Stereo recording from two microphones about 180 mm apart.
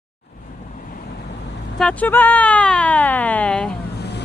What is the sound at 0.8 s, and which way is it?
Waves, 50° left (ahead or behind).